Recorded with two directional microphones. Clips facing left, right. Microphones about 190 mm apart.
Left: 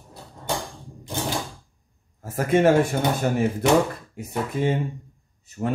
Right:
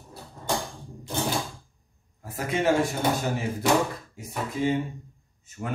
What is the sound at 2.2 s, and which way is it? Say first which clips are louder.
Speech: left 7 dB; 50° left (ahead or behind).